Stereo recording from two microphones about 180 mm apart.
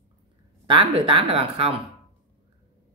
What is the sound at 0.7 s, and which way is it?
Speech, 30° right (ahead or behind).